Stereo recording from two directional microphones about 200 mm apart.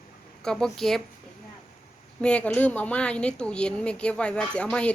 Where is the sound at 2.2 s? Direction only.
5° left (ahead or behind).